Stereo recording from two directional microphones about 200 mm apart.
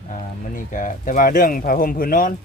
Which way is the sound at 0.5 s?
40° left (ahead or behind).